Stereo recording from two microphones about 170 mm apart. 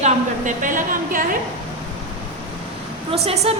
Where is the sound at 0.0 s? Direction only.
50° right (ahead or behind).